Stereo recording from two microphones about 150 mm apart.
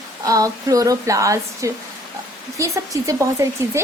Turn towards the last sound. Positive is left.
turn(degrees=-20)  # may be behind; listen again after turning